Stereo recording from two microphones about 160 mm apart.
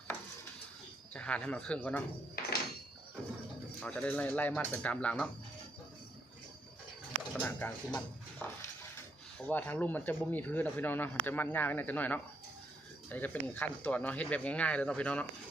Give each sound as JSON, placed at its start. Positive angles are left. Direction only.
{"t": 1.1, "sound": "speech", "side_deg": 5}
{"t": 2.4, "sound": "a sound", "side_deg": 75}
{"t": 3.8, "sound": "speech", "side_deg": 5}
{"t": 7.3, "sound": "speech", "side_deg": 10}
{"t": 9.5, "sound": "speech", "side_deg": 10}